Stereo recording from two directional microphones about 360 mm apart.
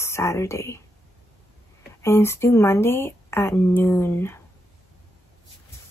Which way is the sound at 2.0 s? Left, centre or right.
Centre.